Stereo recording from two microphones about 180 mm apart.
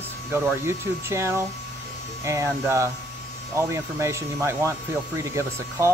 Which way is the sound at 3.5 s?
15° right (ahead or behind).